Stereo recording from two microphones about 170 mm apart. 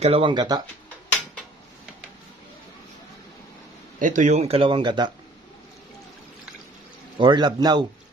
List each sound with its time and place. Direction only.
0.0 s a man's voice: 35° right (ahead or behind)
4.0 s speech: 45° right (ahead or behind); by 5.1 s 25° right (ahead or behind)
7.2 s a man's voice: 25° right (ahead or behind)